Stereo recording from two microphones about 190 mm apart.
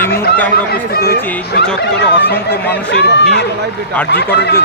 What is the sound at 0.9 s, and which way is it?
Speech, 55° left (ahead or behind).